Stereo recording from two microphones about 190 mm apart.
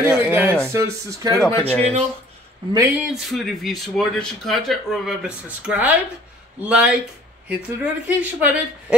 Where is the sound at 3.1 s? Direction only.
Centre (ahead or behind).